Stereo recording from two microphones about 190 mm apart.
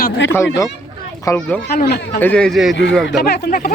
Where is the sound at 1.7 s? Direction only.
60° left (ahead or behind).